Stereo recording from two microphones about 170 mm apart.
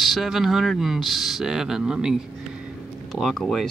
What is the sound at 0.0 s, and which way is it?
Speech, centre (ahead or behind).